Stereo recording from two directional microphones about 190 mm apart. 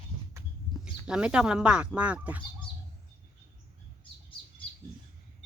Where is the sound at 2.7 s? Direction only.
25° left (ahead or behind).